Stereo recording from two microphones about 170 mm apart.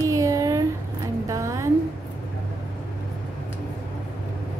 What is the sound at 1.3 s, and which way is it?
Music, 15° right (ahead or behind).